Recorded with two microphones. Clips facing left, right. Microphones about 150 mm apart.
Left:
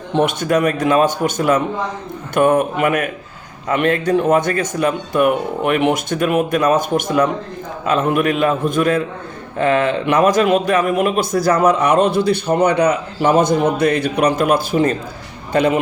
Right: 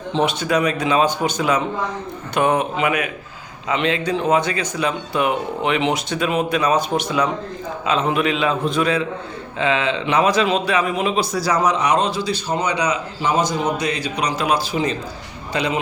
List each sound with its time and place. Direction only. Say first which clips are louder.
0.1 s a man's voice: left 3 dB; 50° left (ahead or behind)